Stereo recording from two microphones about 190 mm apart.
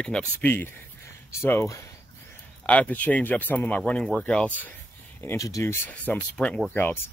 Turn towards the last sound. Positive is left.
turn(degrees=10)  # may be behind; listen again after turning